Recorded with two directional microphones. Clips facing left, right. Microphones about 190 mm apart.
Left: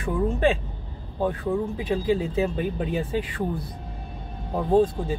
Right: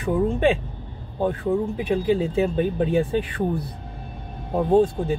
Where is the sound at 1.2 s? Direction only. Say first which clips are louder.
Right 3 dB; 20° right (ahead or behind).